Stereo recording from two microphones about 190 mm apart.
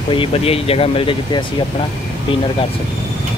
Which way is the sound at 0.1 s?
30° left (ahead or behind).